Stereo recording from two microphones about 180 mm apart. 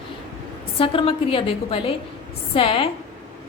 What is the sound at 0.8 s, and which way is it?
A woman's voice, 30° left (ahead or behind).